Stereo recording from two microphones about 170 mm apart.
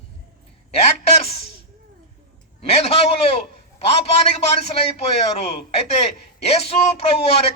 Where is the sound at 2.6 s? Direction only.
35° left (ahead or behind).